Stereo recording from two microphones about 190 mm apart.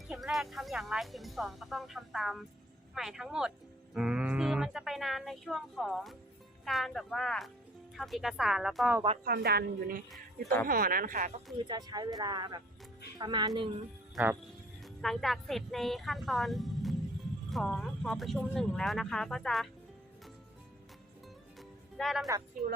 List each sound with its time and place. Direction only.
0.1 s speech: centre (ahead or behind)
9.2 s a woman's voice: 55° right (ahead or behind)
11.7 s speech: 20° right (ahead or behind)
14.8 s speech: centre (ahead or behind)
21.9 s speech: centre (ahead or behind)